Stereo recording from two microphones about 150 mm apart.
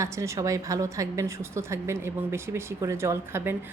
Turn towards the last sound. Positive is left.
turn(degrees=-15)  # may be behind; listen again after turning